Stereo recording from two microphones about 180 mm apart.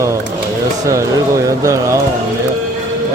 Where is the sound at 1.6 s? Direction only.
15° right (ahead or behind).